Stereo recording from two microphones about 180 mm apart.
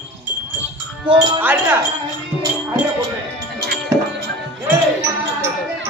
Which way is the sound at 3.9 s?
20° right (ahead or behind).